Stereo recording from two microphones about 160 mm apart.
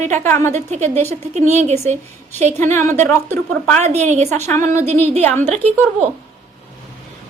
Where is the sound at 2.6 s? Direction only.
15° left (ahead or behind).